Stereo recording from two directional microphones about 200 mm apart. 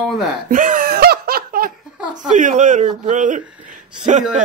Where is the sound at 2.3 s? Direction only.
40° right (ahead or behind).